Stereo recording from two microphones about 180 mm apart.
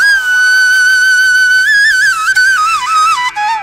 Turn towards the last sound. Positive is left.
turn(degrees=0)  # may be behind; listen again after turning